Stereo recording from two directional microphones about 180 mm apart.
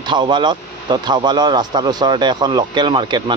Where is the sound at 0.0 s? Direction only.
25° right (ahead or behind).